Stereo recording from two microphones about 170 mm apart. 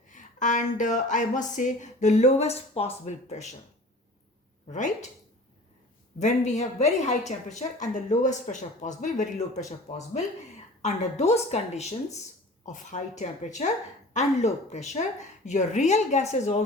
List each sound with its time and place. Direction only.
0.1 s speech: 50° left (ahead or behind)
4.7 s speech: 45° left (ahead or behind)
6.1 s speech: 45° left (ahead or behind)
10.8 s a woman's voice: 40° left (ahead or behind)